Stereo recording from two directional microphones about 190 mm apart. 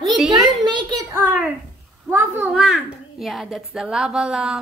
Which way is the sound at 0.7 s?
20° right (ahead or behind).